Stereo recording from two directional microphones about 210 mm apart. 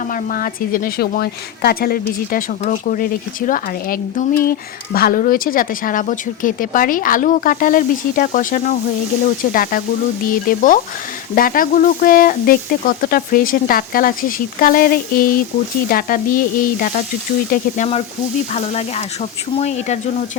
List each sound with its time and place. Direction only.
0.1 s speech: 45° left (ahead or behind)